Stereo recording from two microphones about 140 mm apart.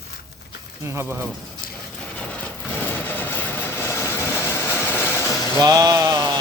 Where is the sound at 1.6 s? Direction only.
90° left.